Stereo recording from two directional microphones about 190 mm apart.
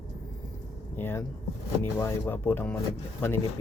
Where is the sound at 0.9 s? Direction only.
10° left (ahead or behind).